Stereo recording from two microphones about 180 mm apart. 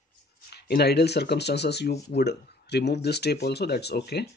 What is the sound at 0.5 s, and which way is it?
Speech, 65° left (ahead or behind).